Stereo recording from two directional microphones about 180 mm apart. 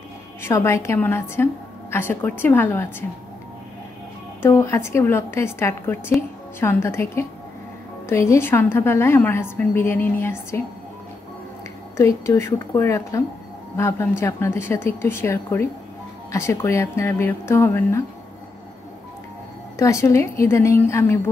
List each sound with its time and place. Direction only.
0.4 s a woman's voice: 15° left (ahead or behind)
4.4 s a woman's voice: 15° left (ahead or behind)
12.0 s a woman's voice: 15° left (ahead or behind)
19.8 s a woman's voice: 15° left (ahead or behind)